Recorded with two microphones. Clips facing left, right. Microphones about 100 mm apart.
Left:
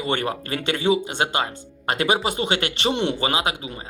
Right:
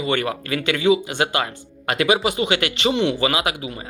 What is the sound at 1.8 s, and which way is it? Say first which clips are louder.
Speech: right 2 dB; 35° left (ahead or behind).